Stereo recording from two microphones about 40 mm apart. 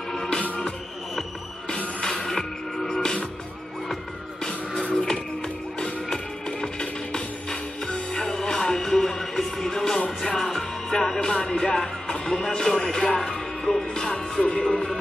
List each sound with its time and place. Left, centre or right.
2.0 s music: centre